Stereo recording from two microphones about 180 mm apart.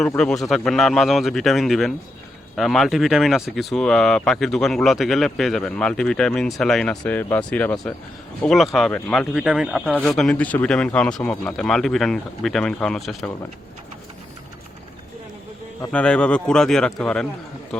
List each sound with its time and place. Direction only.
0.2 s speech: 5° left (ahead or behind)
15.9 s speech: 5° left (ahead or behind)